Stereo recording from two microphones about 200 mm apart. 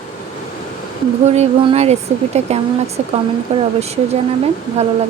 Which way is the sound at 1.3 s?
30° right (ahead or behind).